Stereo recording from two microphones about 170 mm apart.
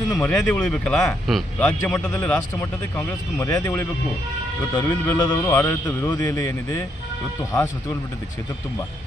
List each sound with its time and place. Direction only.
0.1 s a man's voice: 5° left (ahead or behind)